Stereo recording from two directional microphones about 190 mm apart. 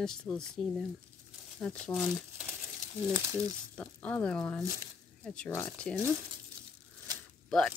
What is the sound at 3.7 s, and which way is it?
Speech, 5° left (ahead or behind).